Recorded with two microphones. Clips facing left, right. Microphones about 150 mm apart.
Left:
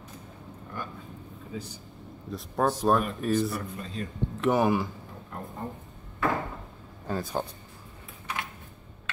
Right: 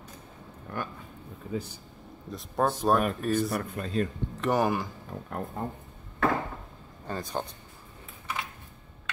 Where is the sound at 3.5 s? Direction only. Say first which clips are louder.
Right 5 dB; 60° right (ahead or behind).